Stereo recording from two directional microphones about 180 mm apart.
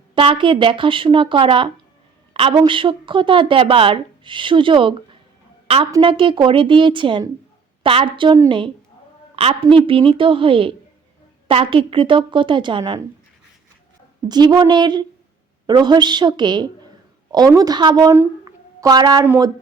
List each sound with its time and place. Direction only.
0.1 s a woman's voice: 30° right (ahead or behind)
14.3 s speech: 25° right (ahead or behind)
18.1 s a sound: 15° right (ahead or behind)
19.2 s speech: 10° right (ahead or behind)